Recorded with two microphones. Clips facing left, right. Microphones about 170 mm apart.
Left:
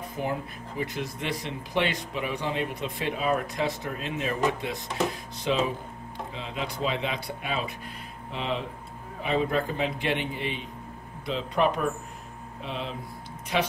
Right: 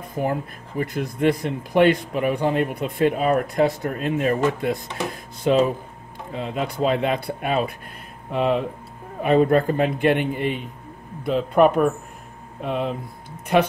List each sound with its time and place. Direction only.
0.1 s speech: 50° right (ahead or behind)